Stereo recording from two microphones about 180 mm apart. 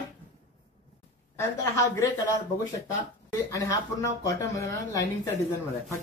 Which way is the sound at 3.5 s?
20° left (ahead or behind).